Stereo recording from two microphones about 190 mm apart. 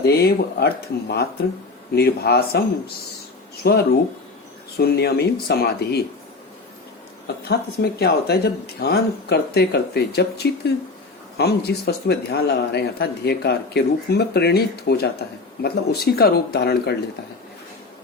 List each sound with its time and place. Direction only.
0.0 s speech: 55° left (ahead or behind)
7.4 s speech: 60° left (ahead or behind)